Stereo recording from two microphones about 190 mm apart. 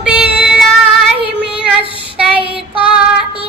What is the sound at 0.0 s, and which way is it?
Music, 5° right (ahead or behind).